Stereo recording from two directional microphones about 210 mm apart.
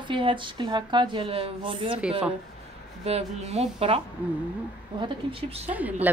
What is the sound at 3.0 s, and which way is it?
A woman's voice, 30° right (ahead or behind).